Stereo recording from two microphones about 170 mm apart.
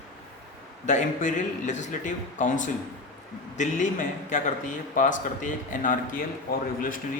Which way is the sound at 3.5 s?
45° left (ahead or behind).